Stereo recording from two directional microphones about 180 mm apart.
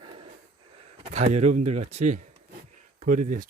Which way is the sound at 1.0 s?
40° right (ahead or behind).